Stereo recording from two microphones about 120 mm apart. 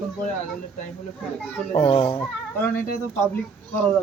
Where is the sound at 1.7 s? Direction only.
55° left (ahead or behind).